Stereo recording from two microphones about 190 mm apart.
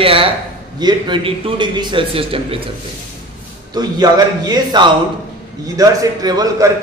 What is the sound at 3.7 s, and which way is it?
A man's voice, 20° right (ahead or behind).